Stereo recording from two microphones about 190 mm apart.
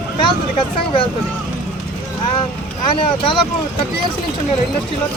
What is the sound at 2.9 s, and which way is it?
Speech, 25° left (ahead or behind).